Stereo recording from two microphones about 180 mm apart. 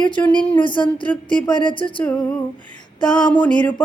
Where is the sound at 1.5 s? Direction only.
25° left (ahead or behind).